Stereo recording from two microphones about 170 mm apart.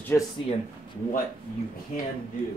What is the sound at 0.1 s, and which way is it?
Speech, 10° left (ahead or behind).